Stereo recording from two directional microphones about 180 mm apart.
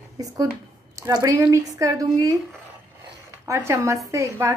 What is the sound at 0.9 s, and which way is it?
Speech, 20° right (ahead or behind).